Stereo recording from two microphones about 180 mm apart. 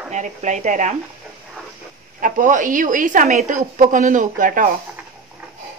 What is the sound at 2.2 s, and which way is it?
A woman's voice, 45° right (ahead or behind).